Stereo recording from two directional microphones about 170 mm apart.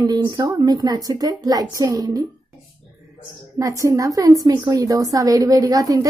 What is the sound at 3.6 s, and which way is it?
A woman's voice, 20° right (ahead or behind).